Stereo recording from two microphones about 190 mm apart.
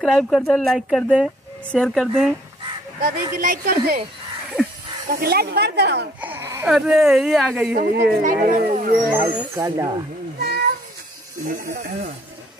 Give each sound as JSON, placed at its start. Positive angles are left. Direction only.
{"t": 0.0, "sound": "speech", "side_deg": 0}
{"t": 3.0, "sound": "speech", "side_deg": -45}
{"t": 5.1, "sound": "speech", "side_deg": -55}
{"t": 6.2, "sound": "baby cry", "side_deg": -10}
{"t": 6.7, "sound": "speech", "side_deg": -5}
{"t": 7.7, "sound": "speech", "side_deg": -55}
{"t": 9.1, "sound": "speech", "side_deg": -10}
{"t": 11.4, "sound": "speech", "side_deg": -45}